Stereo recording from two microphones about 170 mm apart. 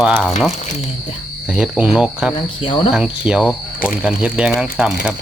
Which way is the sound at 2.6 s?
30° left (ahead or behind).